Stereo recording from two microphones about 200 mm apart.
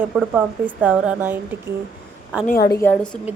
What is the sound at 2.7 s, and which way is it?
Speech, 10° left (ahead or behind).